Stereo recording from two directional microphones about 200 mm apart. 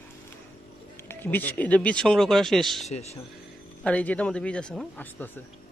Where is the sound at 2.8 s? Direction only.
35° left (ahead or behind).